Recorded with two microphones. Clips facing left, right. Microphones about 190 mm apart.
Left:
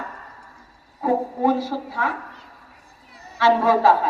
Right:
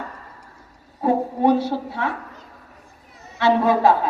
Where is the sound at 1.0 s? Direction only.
25° right (ahead or behind).